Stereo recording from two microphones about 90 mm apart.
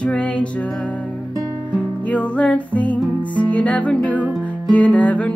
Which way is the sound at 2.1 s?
15° left (ahead or behind).